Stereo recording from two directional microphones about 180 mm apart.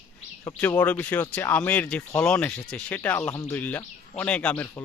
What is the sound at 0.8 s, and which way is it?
Speech, 10° left (ahead or behind).